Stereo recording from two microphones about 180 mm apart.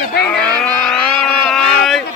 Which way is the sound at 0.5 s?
5° left (ahead or behind).